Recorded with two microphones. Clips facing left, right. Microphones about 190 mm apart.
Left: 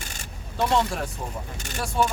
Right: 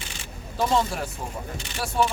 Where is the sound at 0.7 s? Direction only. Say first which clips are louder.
Left 1 dB; centre (ahead or behind).